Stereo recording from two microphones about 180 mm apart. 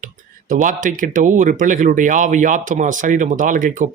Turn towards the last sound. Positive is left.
turn(degrees=-45)  # may be behind; listen again after turning